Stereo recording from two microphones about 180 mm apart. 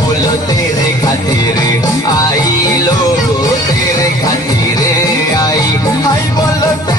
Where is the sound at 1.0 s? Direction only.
20° left (ahead or behind).